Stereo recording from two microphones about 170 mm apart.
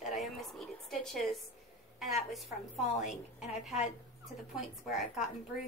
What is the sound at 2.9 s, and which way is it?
Speech, 45° left (ahead or behind).